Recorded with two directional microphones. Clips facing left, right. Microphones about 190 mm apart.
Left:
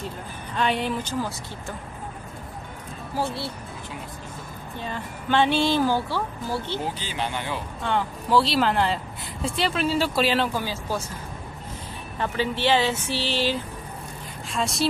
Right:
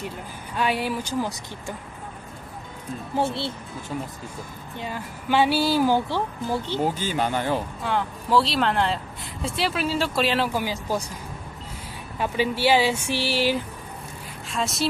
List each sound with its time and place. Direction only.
0.6 s speech: 5° right (ahead or behind)
3.2 s speech: 25° right (ahead or behind)
4.7 s speech: 10° right (ahead or behind)
6.8 s speech: 45° right (ahead or behind)
7.8 s speech: centre (ahead or behind)
10.5 s speech: 15° right (ahead or behind)
12.2 s speech: 10° right (ahead or behind)
14.5 s speech: centre (ahead or behind)